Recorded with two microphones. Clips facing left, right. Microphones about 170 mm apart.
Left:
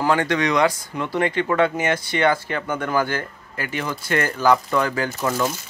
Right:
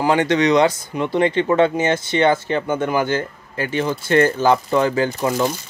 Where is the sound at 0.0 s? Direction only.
20° right (ahead or behind).